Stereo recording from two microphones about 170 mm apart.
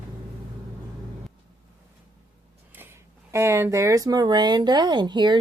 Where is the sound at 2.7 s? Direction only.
15° right (ahead or behind).